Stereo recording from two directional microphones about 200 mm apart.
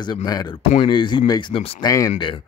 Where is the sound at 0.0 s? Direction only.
20° left (ahead or behind).